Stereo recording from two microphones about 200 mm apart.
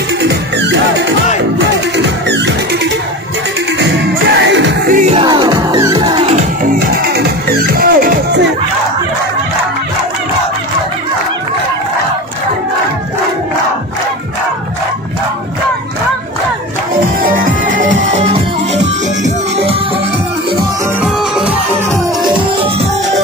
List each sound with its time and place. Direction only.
0.2 s music: 60° right (ahead or behind)
5.2 s music: 20° right (ahead or behind)
6.6 s music: 50° right (ahead or behind)
17.2 s music: 45° right (ahead or behind)
21.0 s music: 5° right (ahead or behind)